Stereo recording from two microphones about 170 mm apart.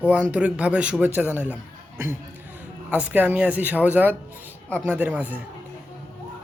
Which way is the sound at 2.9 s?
10° right (ahead or behind).